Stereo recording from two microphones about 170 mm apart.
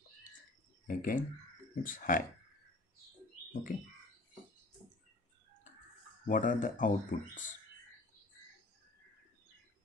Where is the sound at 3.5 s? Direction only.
50° left (ahead or behind).